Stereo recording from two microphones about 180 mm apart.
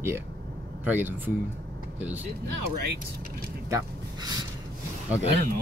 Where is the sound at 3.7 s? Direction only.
20° right (ahead or behind).